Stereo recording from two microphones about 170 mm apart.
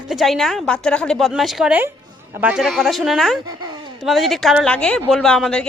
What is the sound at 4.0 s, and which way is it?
A woman's voice, centre (ahead or behind).